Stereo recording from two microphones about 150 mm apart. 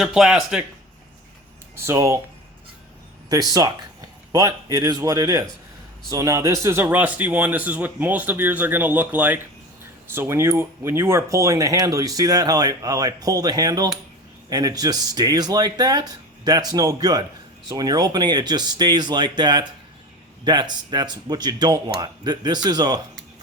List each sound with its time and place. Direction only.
0.0 s speech: 5° right (ahead or behind)
1.7 s speech: 20° right (ahead or behind)
3.2 s speech: 25° right (ahead or behind)